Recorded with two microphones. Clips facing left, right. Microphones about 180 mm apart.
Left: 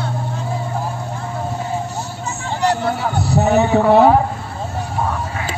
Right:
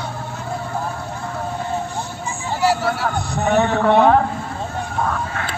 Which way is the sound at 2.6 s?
5° right (ahead or behind).